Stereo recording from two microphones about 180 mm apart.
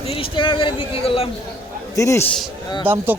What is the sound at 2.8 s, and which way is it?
Speech, 10° right (ahead or behind).